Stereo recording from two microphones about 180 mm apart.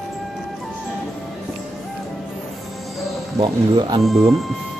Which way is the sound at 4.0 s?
Centre (ahead or behind).